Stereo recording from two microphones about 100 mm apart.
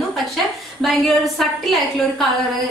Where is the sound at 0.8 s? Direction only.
Centre (ahead or behind).